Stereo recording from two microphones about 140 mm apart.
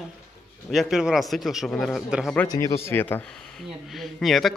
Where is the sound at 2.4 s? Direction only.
25° left (ahead or behind).